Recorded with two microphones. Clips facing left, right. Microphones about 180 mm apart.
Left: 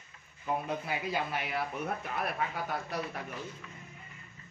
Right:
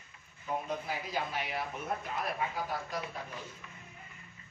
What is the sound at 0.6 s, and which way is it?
A man's voice, 65° left (ahead or behind).